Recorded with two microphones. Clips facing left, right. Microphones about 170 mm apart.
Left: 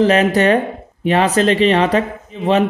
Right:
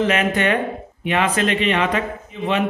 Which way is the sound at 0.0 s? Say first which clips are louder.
Left 6 dB; 35° left (ahead or behind).